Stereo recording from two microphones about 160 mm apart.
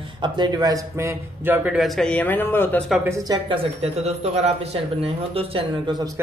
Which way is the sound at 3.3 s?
35° right (ahead or behind).